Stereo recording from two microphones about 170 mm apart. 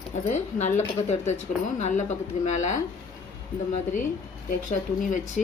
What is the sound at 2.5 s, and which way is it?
Speech, 45° left (ahead or behind).